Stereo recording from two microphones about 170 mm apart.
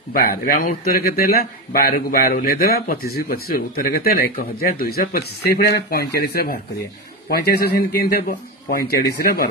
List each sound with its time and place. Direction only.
0.1 s speech: 60° left (ahead or behind)